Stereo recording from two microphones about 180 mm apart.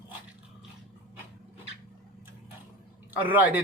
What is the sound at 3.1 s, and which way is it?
Speech, 10° right (ahead or behind).